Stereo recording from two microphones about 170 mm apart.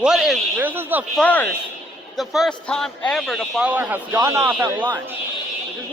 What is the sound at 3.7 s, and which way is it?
A man's voice, 10° right (ahead or behind).